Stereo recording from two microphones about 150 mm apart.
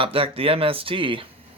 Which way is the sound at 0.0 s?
40° right (ahead or behind).